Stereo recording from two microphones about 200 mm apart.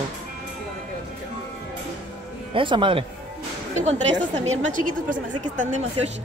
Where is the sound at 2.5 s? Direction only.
25° right (ahead or behind).